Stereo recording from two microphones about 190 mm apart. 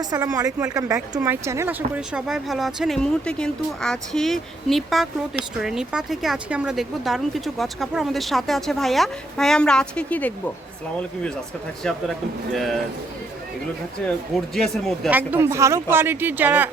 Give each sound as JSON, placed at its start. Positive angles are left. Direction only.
{"t": 0.0, "sound": "speech", "side_deg": -20}
{"t": 11.8, "sound": "speech", "side_deg": 0}
{"t": 14.5, "sound": "speech", "side_deg": 0}
{"t": 15.1, "sound": "speech", "side_deg": -10}